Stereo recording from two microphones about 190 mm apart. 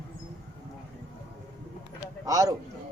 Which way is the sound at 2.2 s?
20° right (ahead or behind).